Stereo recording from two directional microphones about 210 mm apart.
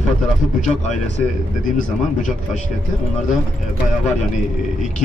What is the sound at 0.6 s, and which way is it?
Speech, 35° left (ahead or behind).